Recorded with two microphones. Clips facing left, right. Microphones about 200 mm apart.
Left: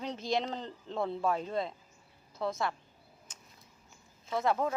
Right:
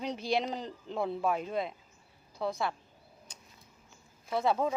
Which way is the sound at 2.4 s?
Centre (ahead or behind).